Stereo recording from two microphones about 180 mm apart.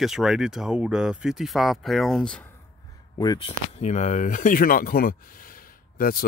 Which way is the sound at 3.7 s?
40° left (ahead or behind).